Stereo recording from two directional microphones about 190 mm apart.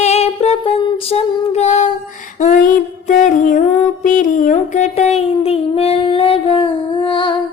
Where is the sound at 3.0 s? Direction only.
40° left (ahead or behind).